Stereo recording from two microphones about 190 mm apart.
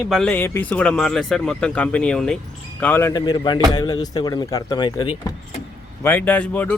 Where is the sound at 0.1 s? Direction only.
5° left (ahead or behind); by 5.3 s 20° left (ahead or behind).